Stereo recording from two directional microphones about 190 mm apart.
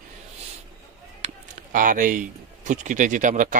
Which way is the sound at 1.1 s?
40° right (ahead or behind).